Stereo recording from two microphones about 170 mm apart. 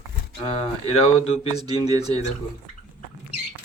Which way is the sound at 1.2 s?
35° left (ahead or behind).